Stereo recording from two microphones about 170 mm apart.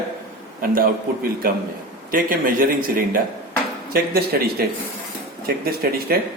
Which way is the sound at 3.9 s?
65° right (ahead or behind).